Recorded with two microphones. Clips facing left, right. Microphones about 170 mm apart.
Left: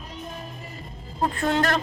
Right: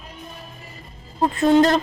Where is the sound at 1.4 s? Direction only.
20° right (ahead or behind).